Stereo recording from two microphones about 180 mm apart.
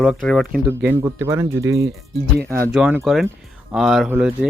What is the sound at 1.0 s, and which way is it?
Speech, 15° right (ahead or behind).